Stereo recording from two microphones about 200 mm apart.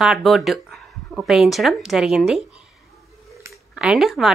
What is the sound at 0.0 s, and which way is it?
Speech, centre (ahead or behind).